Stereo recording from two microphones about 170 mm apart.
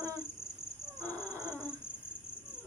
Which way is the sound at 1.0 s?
20° right (ahead or behind).